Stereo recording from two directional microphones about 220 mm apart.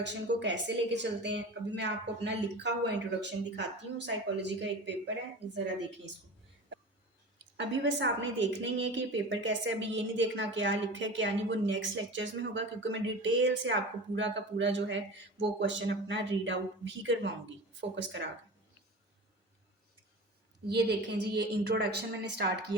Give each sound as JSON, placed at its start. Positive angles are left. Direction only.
{"t": 0.0, "sound": "speech", "side_deg": -50}
{"t": 7.5, "sound": "speech", "side_deg": -55}
{"t": 20.7, "sound": "speech", "side_deg": -50}